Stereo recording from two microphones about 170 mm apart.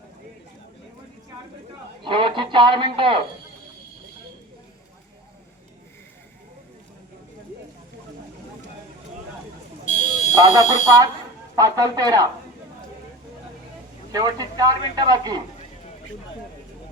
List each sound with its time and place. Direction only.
2.0 s a man's voice: 30° right (ahead or behind)
9.8 s fire alarm: 45° left (ahead or behind)
10.4 s speech: 30° right (ahead or behind)
11.5 s a man's voice: 20° right (ahead or behind)
14.1 s a man's voice: 20° right (ahead or behind)